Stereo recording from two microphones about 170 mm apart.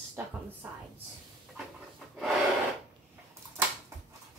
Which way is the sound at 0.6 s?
10° right (ahead or behind).